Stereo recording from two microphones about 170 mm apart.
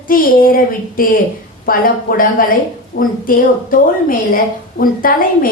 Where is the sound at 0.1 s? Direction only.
55° left (ahead or behind).